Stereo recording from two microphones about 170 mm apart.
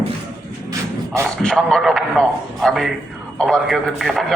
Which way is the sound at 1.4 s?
Centre (ahead or behind).